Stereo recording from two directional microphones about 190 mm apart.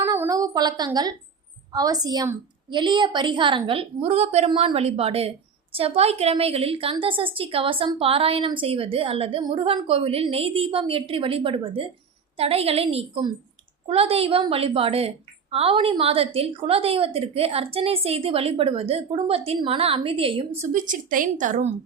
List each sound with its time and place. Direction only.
0.0 s a sound: 15° right (ahead or behind)
1.7 s a woman's voice: 20° right (ahead or behind)
20.7 s a woman's voice: 45° right (ahead or behind)